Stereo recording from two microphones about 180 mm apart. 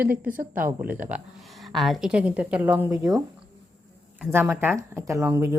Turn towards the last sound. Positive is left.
turn(degrees=-15)  # may be behind; listen again after turning